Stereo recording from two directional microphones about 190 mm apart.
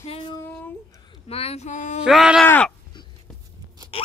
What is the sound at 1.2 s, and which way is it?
Speech, 30° left (ahead or behind).